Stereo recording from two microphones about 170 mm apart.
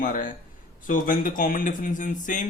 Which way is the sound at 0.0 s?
50° left (ahead or behind).